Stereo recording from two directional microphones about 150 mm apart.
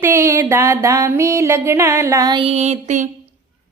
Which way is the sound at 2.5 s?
45° right (ahead or behind).